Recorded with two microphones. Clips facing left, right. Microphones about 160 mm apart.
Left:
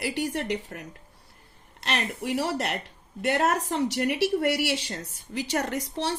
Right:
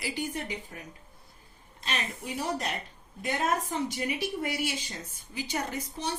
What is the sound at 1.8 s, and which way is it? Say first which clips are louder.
A woman's voice: left 6 dB; 75° left (ahead or behind).